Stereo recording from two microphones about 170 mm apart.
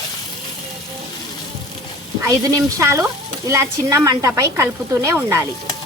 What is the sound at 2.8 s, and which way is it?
Speech, 15° right (ahead or behind).